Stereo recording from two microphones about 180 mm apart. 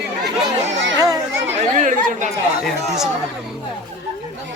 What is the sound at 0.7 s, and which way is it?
Children playing, 90° right.